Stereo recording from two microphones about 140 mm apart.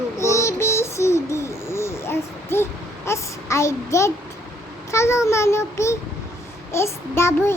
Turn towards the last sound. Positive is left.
turn(degrees=20)  # may be behind; listen again after turning